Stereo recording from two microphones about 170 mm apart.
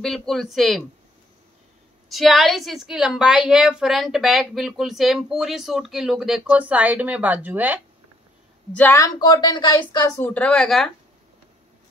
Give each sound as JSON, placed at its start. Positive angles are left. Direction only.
{"t": 0.0, "sound": "a woman's voice", "side_deg": 0}
{"t": 2.0, "sound": "a woman's voice", "side_deg": 0}
{"t": 8.7, "sound": "a woman's voice", "side_deg": 15}